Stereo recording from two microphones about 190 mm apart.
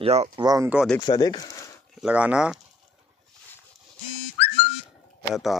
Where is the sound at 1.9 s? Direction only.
5° right (ahead or behind).